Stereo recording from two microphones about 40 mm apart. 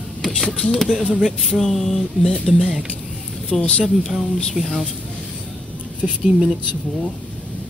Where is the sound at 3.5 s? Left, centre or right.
Left.